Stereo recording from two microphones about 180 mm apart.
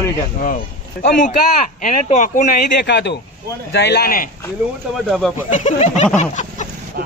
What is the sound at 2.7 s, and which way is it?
Speech, 75° left (ahead or behind).